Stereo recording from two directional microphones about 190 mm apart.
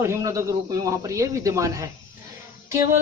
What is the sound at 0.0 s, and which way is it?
Speech, 15° right (ahead or behind).